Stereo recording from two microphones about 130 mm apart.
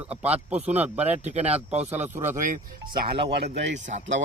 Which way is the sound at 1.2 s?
55° right (ahead or behind).